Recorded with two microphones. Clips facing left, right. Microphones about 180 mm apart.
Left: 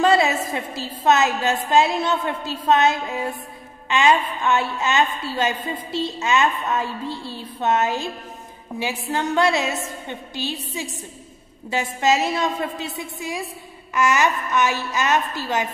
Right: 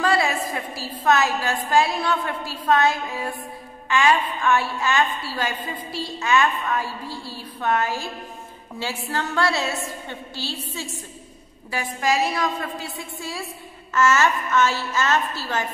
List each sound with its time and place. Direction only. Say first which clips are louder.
0.0 s a woman's voice: left 4 dB; 20° left (ahead or behind)